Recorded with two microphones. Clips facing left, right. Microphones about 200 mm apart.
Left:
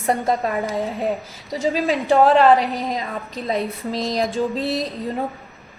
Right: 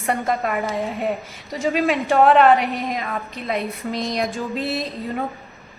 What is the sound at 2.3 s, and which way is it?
A woman's voice, 30° left (ahead or behind).